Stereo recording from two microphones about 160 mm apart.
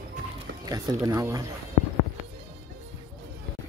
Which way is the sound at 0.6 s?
20° right (ahead or behind).